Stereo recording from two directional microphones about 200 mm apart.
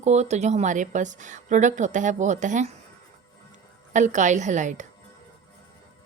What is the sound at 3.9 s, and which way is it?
Speech, 35° right (ahead or behind).